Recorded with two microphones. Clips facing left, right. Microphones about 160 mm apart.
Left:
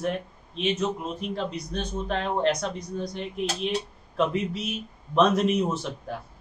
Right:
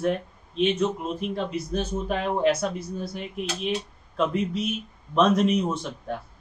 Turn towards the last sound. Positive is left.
turn(degrees=0)  # may be behind; listen again after turning